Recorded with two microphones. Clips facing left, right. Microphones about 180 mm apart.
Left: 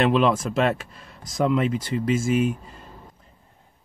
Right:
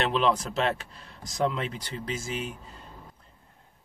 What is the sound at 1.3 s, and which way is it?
Speech, 50° left (ahead or behind).